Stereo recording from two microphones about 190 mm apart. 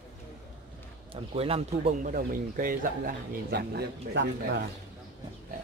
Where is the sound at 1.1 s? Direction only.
30° right (ahead or behind).